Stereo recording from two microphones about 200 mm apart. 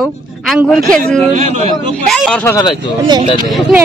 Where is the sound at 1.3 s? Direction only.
35° right (ahead or behind).